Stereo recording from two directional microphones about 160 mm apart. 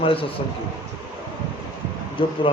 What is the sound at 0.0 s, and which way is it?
Speech, 35° left (ahead or behind).